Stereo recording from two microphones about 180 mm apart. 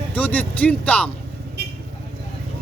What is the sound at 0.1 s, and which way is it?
Speech, 10° left (ahead or behind).